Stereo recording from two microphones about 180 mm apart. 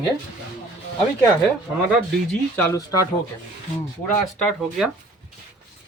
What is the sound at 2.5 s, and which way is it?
Speech, 15° left (ahead or behind).